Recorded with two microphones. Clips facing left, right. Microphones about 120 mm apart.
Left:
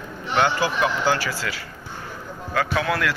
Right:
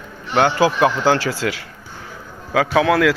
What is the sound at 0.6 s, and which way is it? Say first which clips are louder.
Speech: right 6 dB; 65° right (ahead or behind).